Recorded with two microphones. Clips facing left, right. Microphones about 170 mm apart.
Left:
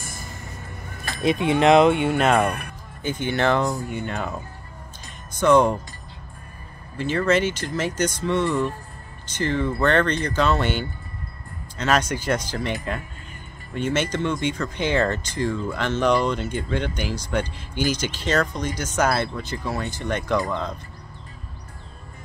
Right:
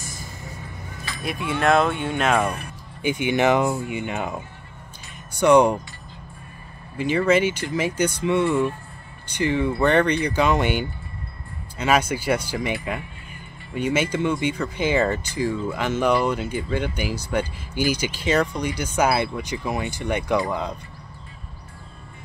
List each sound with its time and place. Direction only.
1.1 s a sound: 50° left (ahead or behind)
1.4 s speech: 20° left (ahead or behind)
2.4 s speech: 60° left (ahead or behind)
3.0 s speech: 15° right (ahead or behind)
7.0 s speech: 10° right (ahead or behind)
13.7 s speech: 10° right (ahead or behind)